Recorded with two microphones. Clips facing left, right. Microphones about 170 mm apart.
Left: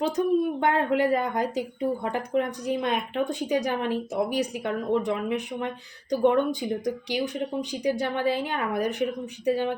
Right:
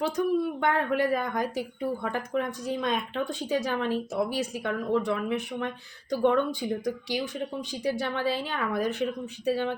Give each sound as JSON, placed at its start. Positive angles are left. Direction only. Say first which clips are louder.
{"t": 0.0, "sound": "speech", "louder": "left 3 dB", "side_deg": 20}